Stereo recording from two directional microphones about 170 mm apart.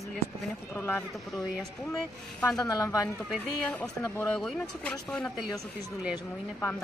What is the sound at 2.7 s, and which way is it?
Speech, 20° left (ahead or behind).